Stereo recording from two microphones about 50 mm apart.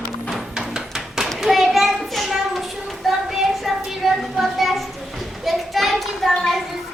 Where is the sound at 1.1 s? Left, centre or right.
Centre.